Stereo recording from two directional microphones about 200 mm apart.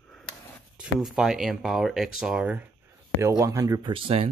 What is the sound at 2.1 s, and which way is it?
Speech, 5° right (ahead or behind).